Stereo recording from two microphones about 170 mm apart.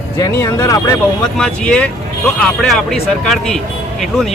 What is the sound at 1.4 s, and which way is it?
Speech, 5° left (ahead or behind).